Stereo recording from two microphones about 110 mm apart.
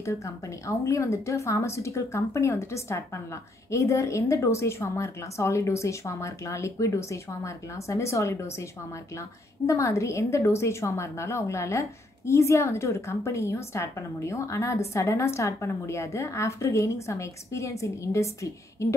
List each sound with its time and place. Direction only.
0.0 s a woman's voice: 25° left (ahead or behind)
9.7 s a woman's voice: 30° left (ahead or behind)